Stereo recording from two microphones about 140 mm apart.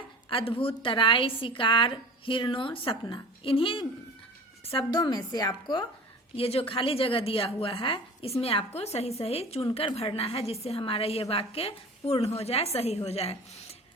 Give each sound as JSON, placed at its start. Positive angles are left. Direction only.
{"t": 0.3, "sound": "a woman's voice", "side_deg": 40}
{"t": 6.3, "sound": "a woman's voice", "side_deg": 45}